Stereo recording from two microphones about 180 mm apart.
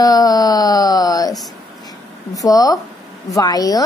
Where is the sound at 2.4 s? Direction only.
20° left (ahead or behind).